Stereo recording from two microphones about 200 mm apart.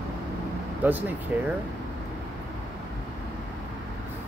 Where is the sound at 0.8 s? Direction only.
10° right (ahead or behind).